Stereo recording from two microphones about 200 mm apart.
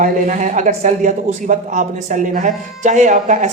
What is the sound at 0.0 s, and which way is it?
Speech, 40° right (ahead or behind).